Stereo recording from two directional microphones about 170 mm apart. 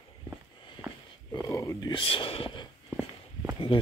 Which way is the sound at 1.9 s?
30° left (ahead or behind).